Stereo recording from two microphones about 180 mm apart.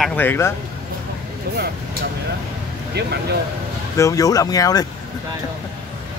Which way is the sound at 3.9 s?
15° left (ahead or behind).